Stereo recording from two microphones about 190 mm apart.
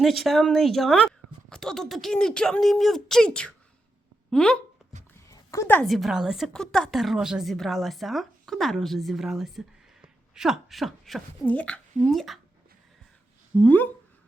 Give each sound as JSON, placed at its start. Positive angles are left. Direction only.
{"t": 0.0, "sound": "a woman's voice", "side_deg": 0}
{"t": 5.3, "sound": "a woman's voice", "side_deg": 15}
{"t": 13.7, "sound": "speech", "side_deg": 10}